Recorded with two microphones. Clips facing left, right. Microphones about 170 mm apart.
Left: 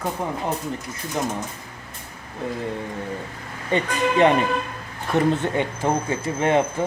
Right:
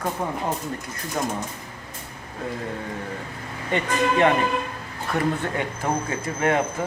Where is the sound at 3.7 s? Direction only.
20° left (ahead or behind).